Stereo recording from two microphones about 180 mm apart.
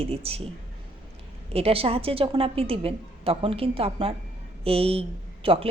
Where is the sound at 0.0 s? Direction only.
35° right (ahead or behind).